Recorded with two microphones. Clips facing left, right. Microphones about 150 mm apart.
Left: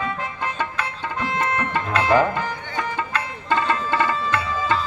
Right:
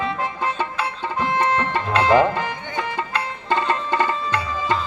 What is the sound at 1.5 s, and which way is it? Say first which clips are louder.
Music: right 2 dB; 30° right (ahead or behind).